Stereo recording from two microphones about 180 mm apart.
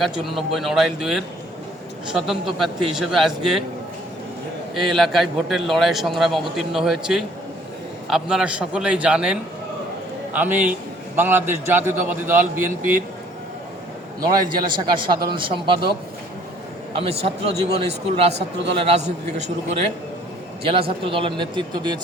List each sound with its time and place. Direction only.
0.0 s a man's voice: centre (ahead or behind)
4.7 s a man's voice: centre (ahead or behind)
10.3 s a man's voice: 10° right (ahead or behind)
14.2 s a man's voice: 20° right (ahead or behind)